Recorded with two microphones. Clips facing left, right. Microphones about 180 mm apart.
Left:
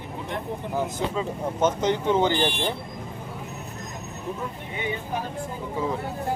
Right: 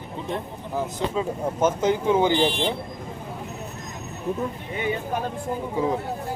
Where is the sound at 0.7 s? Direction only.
5° right (ahead or behind).